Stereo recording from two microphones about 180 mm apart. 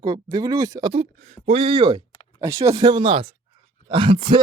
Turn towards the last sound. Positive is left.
turn(degrees=-30)  # may be behind; listen again after turning